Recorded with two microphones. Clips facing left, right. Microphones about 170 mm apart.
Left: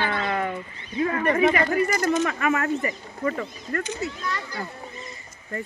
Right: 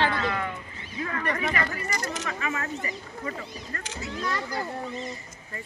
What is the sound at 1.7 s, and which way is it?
Speech, 55° left (ahead or behind).